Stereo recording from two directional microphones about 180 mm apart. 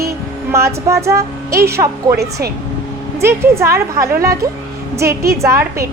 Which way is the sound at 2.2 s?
60° right (ahead or behind).